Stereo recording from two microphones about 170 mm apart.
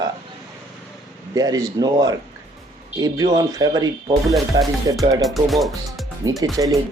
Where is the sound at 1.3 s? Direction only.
20° right (ahead or behind).